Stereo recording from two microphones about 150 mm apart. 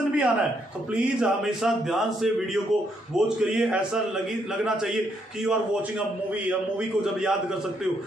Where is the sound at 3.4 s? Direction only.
5° right (ahead or behind).